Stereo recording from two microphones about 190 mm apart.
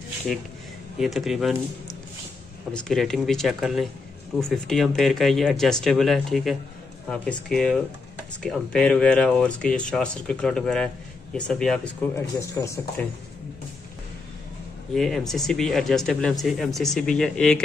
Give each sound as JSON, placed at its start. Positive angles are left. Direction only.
{"t": 0.9, "sound": "speech", "side_deg": 0}
{"t": 2.7, "sound": "speech", "side_deg": 5}
{"t": 12.4, "sound": "speech", "side_deg": 15}
{"t": 15.0, "sound": "speech", "side_deg": 0}